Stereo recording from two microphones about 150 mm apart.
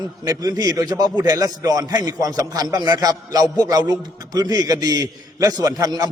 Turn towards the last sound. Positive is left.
turn(degrees=-25)  # may be behind; listen again after turning